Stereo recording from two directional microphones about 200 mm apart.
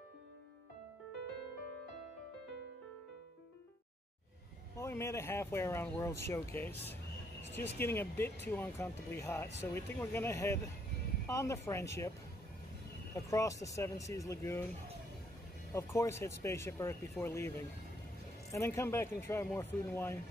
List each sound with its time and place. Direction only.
4.7 s speech: 15° left (ahead or behind)
13.1 s speech: 15° left (ahead or behind)
15.7 s speech: 15° left (ahead or behind)